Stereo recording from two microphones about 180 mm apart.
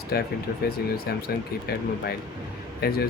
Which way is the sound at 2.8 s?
60° left (ahead or behind).